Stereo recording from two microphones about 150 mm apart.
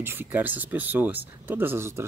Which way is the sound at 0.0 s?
15° right (ahead or behind).